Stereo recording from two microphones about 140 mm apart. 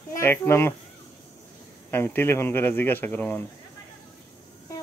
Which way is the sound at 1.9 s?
15° left (ahead or behind).